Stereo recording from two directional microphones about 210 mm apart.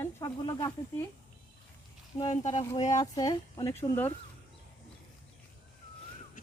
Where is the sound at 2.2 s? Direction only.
30° left (ahead or behind).